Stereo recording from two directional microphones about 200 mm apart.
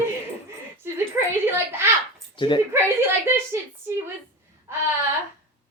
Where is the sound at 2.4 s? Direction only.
25° left (ahead or behind).